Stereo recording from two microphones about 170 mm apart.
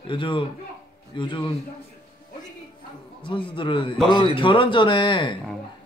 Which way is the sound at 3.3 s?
30° left (ahead or behind).